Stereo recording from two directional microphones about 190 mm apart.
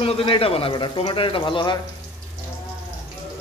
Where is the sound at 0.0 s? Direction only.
30° left (ahead or behind).